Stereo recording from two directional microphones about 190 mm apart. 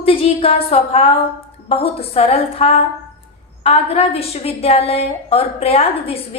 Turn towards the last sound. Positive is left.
turn(degrees=30)  # may be behind; listen again after turning